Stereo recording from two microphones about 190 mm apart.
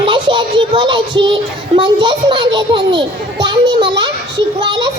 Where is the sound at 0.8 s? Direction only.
25° right (ahead or behind).